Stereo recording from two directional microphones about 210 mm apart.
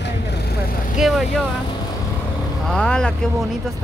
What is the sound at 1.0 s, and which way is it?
Speech, centre (ahead or behind).